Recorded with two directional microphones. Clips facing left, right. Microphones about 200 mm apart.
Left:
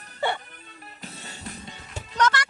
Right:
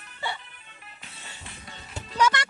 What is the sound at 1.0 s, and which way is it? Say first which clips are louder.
Music: left 8 dB; 40° left (ahead or behind).